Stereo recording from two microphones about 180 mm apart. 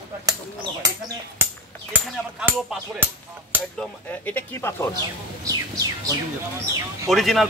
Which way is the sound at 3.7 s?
10° left (ahead or behind).